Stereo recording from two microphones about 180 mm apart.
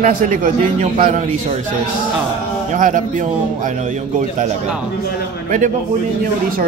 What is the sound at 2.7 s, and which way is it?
A man's voice, 45° right (ahead or behind).